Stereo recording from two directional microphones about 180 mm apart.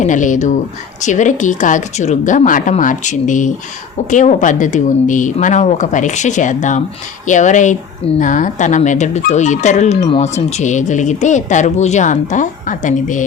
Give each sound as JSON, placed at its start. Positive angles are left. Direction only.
{"t": 0.0, "sound": "speech", "side_deg": 45}